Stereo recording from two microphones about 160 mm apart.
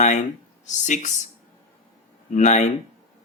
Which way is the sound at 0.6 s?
50° left (ahead or behind).